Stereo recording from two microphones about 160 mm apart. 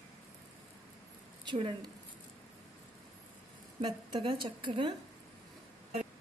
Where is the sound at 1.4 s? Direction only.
30° right (ahead or behind).